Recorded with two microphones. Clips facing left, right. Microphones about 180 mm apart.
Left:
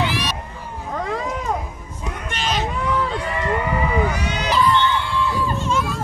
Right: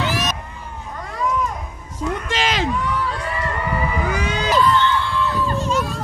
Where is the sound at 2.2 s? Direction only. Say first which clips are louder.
Even; 90° right.